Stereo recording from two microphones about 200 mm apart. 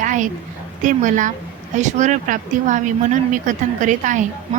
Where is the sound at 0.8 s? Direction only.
40° right (ahead or behind).